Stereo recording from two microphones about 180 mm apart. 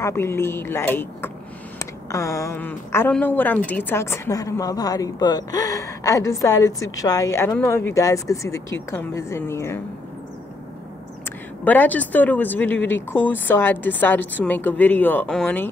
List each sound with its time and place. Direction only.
0.0 s a woman's voice: 15° left (ahead or behind)
11.6 s a woman's voice: 10° left (ahead or behind)